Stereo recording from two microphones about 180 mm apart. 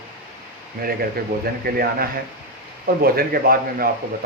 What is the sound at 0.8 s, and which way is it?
A man's voice, 55° right (ahead or behind).